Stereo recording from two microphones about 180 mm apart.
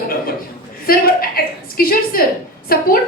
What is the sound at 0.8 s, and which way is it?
A woman's voice, 55° left (ahead or behind).